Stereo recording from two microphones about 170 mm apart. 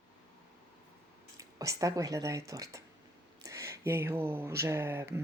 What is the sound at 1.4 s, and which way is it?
Speech, 20° right (ahead or behind).